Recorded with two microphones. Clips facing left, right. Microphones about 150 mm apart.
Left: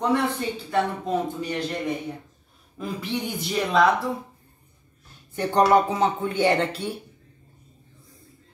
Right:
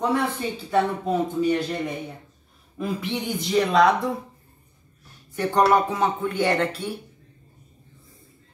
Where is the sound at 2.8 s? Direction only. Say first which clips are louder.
Right 3 dB; centre (ahead or behind).